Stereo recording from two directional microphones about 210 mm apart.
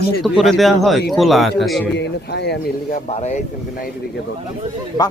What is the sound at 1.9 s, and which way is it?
Speech, 55° left (ahead or behind).